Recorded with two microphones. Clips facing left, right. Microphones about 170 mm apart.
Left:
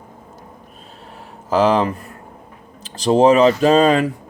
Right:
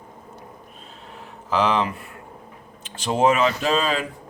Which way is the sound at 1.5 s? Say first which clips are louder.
Left 6 dB; 40° left (ahead or behind).